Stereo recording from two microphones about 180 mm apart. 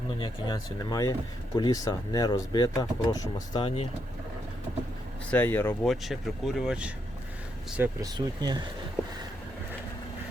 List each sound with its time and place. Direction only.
0.2 s speech: 25° left (ahead or behind)
3.5 s speech: 30° left (ahead or behind)
5.3 s speech: 10° left (ahead or behind)
5.9 s speech: centre (ahead or behind)
7.8 s speech: 20° right (ahead or behind)